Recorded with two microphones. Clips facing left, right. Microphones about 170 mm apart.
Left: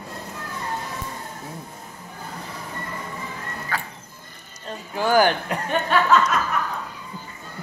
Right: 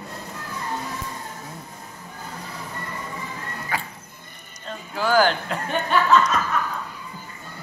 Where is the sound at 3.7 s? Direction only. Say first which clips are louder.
Right 1 dB; 15° right (ahead or behind).